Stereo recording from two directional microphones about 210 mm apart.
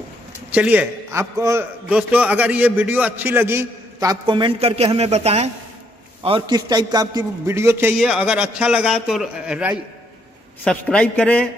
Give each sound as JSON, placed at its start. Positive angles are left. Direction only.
{"t": 0.5, "sound": "a man's voice", "side_deg": -5}